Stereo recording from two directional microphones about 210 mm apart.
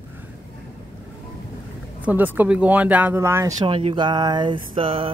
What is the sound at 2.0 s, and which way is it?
Speech, 10° right (ahead or behind).